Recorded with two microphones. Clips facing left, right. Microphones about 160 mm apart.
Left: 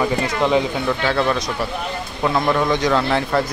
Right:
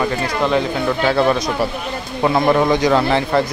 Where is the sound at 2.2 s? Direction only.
25° right (ahead or behind).